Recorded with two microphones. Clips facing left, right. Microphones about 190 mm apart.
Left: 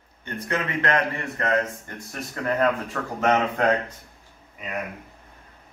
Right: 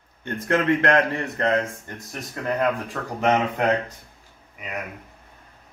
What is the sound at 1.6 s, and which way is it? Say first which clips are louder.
Speech: left 1 dB; 15° right (ahead or behind).